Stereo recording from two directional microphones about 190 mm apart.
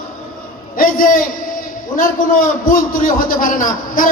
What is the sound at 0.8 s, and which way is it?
A man's voice, 45° left (ahead or behind).